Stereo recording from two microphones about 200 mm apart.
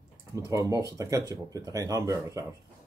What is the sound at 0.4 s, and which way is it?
Speech, 15° right (ahead or behind).